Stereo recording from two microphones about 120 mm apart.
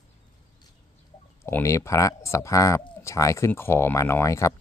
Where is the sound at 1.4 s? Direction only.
25° left (ahead or behind).